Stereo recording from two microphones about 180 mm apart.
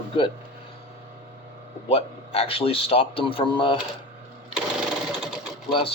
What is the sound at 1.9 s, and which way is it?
Speech, 35° left (ahead or behind).